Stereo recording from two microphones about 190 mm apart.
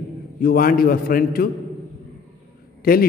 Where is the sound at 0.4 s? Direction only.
50° left (ahead or behind).